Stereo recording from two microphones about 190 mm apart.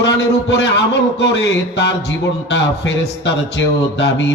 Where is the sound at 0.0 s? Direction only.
70° left (ahead or behind).